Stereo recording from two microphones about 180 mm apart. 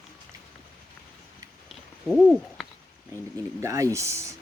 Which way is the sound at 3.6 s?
15° right (ahead or behind).